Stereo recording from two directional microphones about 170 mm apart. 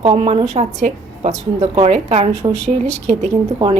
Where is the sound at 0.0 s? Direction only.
35° right (ahead or behind).